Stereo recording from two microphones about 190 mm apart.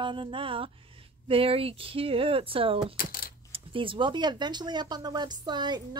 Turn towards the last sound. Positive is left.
turn(degrees=-20)  # may be behind; listen again after turning